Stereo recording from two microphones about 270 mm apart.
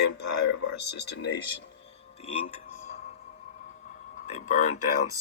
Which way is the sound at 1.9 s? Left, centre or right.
Left.